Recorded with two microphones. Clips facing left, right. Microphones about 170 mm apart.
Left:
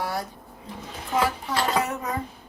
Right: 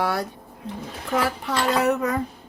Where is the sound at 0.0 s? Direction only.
70° right (ahead or behind).